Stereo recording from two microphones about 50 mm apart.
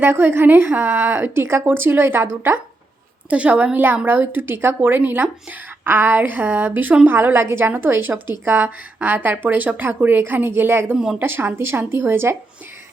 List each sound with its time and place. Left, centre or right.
0.0 s speech: right
3.2 s a woman's voice: right
3.8 s a woman's voice: right